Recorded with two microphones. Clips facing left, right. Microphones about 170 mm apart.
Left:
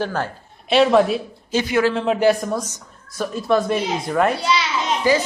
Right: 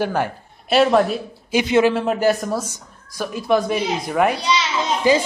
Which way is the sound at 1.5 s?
20° right (ahead or behind).